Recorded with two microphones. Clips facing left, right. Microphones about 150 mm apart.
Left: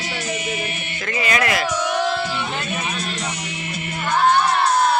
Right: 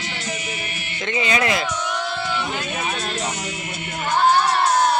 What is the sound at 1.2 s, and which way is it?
Speech, 25° right (ahead or behind).